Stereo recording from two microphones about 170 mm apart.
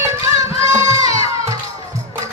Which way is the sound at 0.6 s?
20° right (ahead or behind).